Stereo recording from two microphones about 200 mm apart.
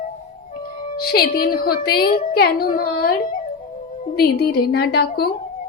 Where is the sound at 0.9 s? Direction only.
50° left (ahead or behind).